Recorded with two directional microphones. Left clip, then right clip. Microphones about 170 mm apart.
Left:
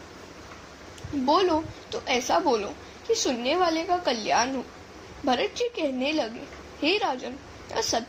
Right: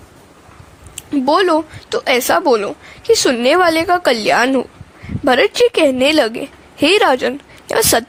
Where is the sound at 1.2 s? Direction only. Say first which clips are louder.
Right 9 dB; 60° right (ahead or behind).